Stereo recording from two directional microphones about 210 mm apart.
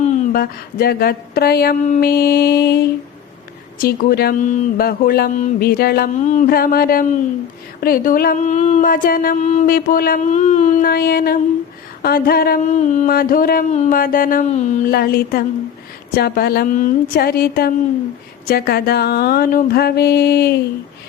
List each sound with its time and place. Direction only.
0.2 s speech: 45° left (ahead or behind)